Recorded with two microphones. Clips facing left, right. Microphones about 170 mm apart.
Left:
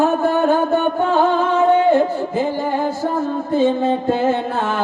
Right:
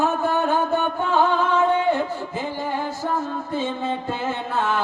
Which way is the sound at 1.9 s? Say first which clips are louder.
Left 7 dB; 50° left (ahead or behind).